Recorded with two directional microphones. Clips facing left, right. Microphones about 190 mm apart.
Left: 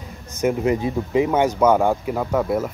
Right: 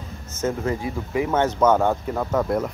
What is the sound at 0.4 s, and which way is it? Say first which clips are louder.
Speech: left 5 dB; 15° left (ahead or behind).